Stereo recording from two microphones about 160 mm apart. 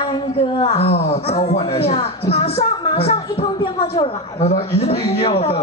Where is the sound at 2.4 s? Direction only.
40° left (ahead or behind).